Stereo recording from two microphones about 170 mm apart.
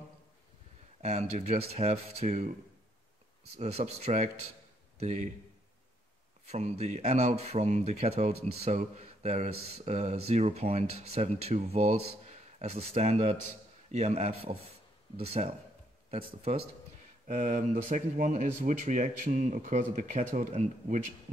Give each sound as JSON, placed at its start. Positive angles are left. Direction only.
{"t": 1.0, "sound": "speech", "side_deg": -40}
{"t": 3.5, "sound": "speech", "side_deg": -35}
{"t": 6.4, "sound": "speech", "side_deg": -40}
{"t": 17.3, "sound": "speech", "side_deg": -45}